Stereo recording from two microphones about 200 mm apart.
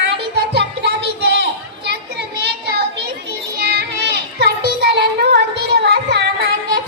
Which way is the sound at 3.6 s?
55° right (ahead or behind).